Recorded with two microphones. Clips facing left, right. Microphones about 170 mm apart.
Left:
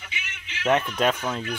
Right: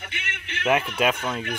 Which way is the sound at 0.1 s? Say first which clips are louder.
Right 4 dB; 60° right (ahead or behind).